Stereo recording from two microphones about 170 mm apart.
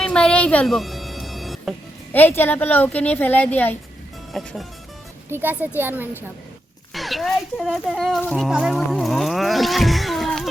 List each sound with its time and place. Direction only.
0.0 s music: 5° left (ahead or behind)
2.1 s speech: 10° left (ahead or behind)
4.3 s speech: centre (ahead or behind)
5.3 s speech: 10° right (ahead or behind)
6.9 s a child's voice: centre (ahead or behind)